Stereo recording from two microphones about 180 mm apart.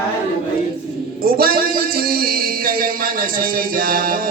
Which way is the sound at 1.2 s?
55° right (ahead or behind).